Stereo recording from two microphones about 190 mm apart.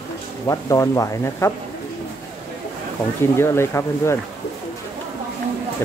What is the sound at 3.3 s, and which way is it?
Speech, 15° left (ahead or behind).